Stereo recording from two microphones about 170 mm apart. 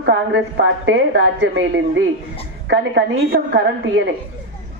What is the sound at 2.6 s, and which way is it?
A man's voice, 85° right.